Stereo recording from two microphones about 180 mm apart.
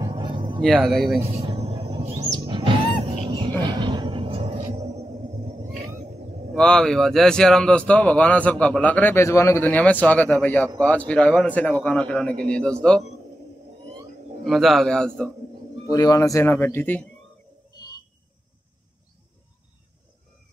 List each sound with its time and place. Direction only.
0.0 s a sound: 25° right (ahead or behind)
0.7 s a man's voice: centre (ahead or behind)
1.4 s music: 35° right (ahead or behind)
3.6 s a sound: 25° right (ahead or behind)
6.5 s a man's voice: 5° left (ahead or behind)
14.4 s a man's voice: centre (ahead or behind)
15.9 s a man's voice: 20° left (ahead or behind)